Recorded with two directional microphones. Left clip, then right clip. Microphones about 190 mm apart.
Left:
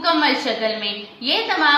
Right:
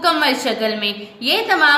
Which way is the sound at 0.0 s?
55° right (ahead or behind).